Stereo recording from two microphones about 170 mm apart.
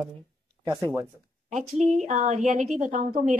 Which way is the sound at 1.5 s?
45° right (ahead or behind).